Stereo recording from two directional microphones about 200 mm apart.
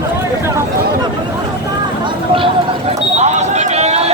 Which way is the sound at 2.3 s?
25° right (ahead or behind).